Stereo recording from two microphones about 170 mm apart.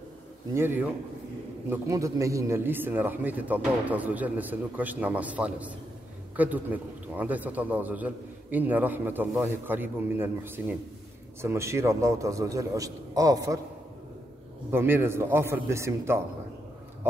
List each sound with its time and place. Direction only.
0.6 s a man's voice: 10° right (ahead or behind)
14.7 s a man's voice: 10° right (ahead or behind)
17.0 s a sound: 10° right (ahead or behind)